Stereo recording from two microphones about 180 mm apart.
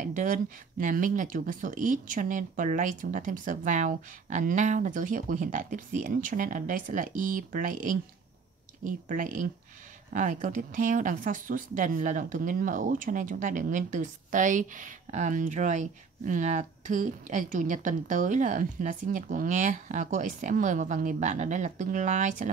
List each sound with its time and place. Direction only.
0.0 s speech: 45° right (ahead or behind)